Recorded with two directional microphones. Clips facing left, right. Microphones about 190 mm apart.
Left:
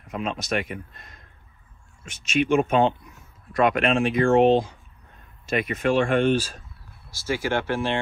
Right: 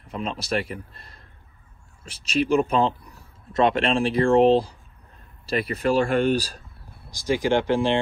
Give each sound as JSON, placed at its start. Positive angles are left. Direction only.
{"t": 0.0, "sound": "speech", "side_deg": -30}
{"t": 7.1, "sound": "speech", "side_deg": -15}